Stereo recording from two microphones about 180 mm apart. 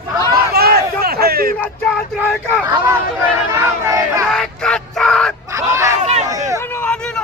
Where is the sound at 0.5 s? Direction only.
60° right (ahead or behind).